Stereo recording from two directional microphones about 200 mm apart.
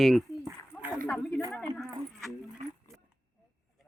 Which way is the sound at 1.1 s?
Centre (ahead or behind).